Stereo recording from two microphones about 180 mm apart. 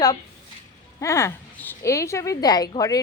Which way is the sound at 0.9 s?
15° left (ahead or behind).